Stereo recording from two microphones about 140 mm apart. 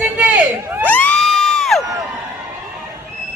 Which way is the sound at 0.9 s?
10° left (ahead or behind).